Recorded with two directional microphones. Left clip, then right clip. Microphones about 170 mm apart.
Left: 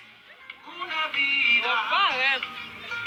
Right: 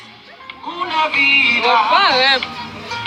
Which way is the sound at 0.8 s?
25° right (ahead or behind).